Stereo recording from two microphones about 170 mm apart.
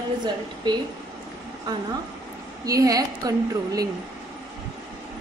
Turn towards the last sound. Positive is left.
turn(degrees=-20)  # may be behind; listen again after turning